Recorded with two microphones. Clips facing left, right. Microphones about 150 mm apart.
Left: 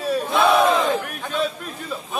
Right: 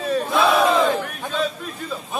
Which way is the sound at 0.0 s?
5° left (ahead or behind).